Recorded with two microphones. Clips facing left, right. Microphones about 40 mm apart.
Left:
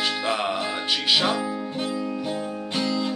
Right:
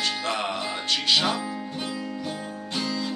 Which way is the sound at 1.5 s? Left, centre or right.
Centre.